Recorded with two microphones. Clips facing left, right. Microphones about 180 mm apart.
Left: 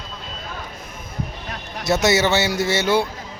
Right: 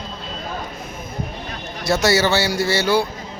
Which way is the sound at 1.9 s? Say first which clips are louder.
Even; 20° left (ahead or behind).